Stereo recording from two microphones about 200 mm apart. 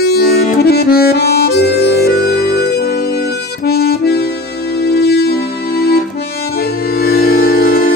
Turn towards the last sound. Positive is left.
turn(degrees=45)  # may be behind; listen again after turning